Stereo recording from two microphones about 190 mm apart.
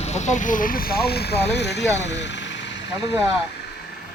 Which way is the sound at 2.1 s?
65° left (ahead or behind).